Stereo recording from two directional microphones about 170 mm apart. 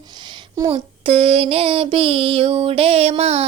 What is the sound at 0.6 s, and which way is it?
Child singing, 35° right (ahead or behind).